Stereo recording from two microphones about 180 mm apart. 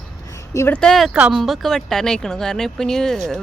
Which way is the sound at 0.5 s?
15° left (ahead or behind).